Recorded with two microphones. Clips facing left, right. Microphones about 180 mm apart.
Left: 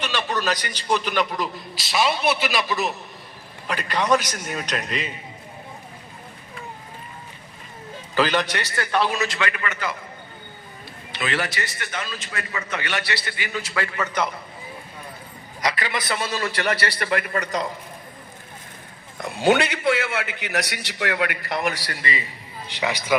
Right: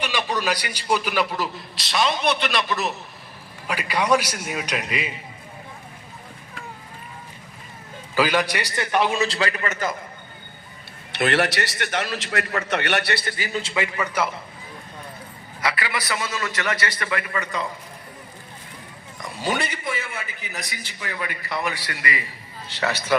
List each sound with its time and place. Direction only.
0.0 s a man's voice: 10° right (ahead or behind)
8.1 s a man's voice: 10° right (ahead or behind)
9.1 s a man's voice: 30° right (ahead or behind)
11.1 s a man's voice: 65° right (ahead or behind)
13.3 s a man's voice: 35° right (ahead or behind); by 14.3 s 10° right (ahead or behind)
15.6 s a man's voice: 20° left (ahead or behind); by 17.7 s 40° left (ahead or behind)
19.1 s a man's voice: 65° left (ahead or behind)
21.7 s a man's voice: 40° left (ahead or behind)
22.6 s a man's voice: 15° left (ahead or behind)